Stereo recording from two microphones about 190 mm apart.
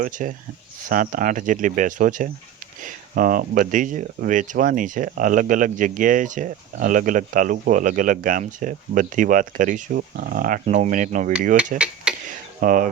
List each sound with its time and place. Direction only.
0.0 s speech: 45° right (ahead or behind)
12.1 s a sound: 5° right (ahead or behind)
12.5 s speech: 45° right (ahead or behind)